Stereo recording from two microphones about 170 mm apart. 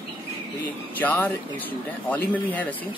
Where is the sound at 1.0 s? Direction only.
10° left (ahead or behind).